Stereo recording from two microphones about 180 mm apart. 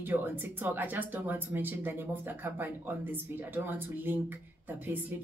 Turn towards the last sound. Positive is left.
turn(degrees=-10)  # may be behind; listen again after turning